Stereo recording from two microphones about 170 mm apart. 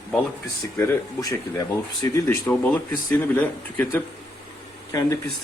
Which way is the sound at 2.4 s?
10° left (ahead or behind).